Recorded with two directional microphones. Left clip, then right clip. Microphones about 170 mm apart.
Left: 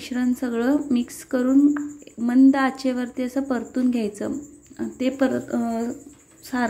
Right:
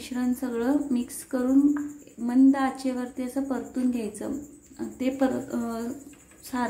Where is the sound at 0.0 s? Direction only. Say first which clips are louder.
Left 4 dB; 25° left (ahead or behind).